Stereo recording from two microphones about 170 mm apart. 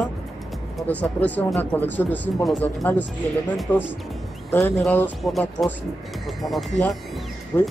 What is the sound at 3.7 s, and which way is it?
Speech, 10° left (ahead or behind).